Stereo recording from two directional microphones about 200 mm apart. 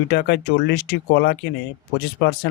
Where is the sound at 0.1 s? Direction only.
55° left (ahead or behind).